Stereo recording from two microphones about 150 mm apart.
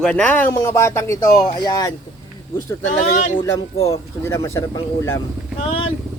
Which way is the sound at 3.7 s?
45° left (ahead or behind).